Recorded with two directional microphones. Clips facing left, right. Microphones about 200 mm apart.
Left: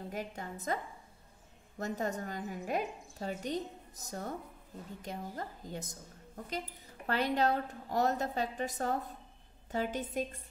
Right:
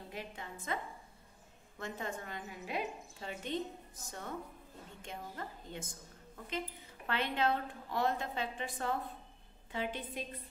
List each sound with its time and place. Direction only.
0.1 s a woman's voice: 45° left (ahead or behind)
1.8 s a woman's voice: 40° left (ahead or behind)